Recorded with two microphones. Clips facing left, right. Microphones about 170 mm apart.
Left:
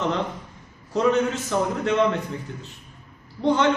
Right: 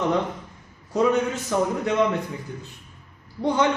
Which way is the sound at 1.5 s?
10° right (ahead or behind).